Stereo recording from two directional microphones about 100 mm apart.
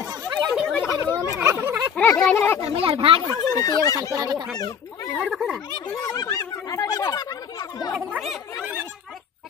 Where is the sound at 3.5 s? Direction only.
35° left (ahead or behind).